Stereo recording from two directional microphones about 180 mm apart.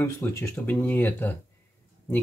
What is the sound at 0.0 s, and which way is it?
Speech, 15° left (ahead or behind).